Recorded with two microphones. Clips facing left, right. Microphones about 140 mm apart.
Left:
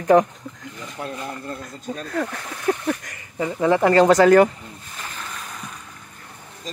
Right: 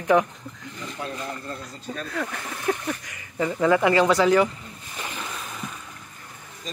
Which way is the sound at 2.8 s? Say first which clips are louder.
Left 6 dB; 45° left (ahead or behind).